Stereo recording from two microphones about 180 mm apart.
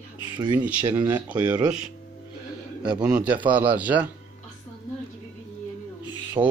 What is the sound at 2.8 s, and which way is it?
A man's voice, 5° right (ahead or behind).